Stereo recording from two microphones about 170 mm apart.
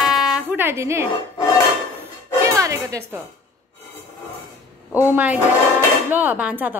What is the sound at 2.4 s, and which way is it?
Music, 20° right (ahead or behind).